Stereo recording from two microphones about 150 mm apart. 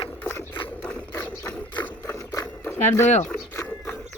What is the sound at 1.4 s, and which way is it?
Ratchet, 5° left (ahead or behind).